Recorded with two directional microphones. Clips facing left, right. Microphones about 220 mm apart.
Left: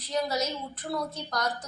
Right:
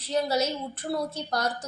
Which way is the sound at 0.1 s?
30° right (ahead or behind).